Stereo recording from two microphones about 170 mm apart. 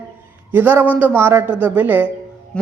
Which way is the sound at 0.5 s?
10° right (ahead or behind).